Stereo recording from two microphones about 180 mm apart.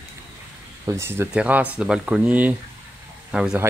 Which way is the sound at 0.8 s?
15° right (ahead or behind).